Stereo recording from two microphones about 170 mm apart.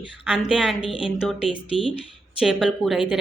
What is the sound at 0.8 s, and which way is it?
Speech, 30° left (ahead or behind).